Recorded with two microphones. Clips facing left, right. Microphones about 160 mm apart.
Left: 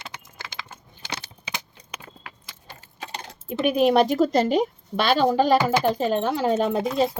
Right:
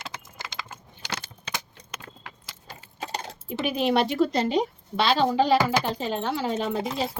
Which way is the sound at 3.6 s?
50° left (ahead or behind).